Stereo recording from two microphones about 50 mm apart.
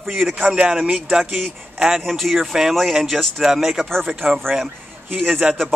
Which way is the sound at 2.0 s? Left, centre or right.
Centre.